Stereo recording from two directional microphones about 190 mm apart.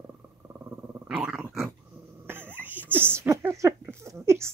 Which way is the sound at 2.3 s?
10° right (ahead or behind).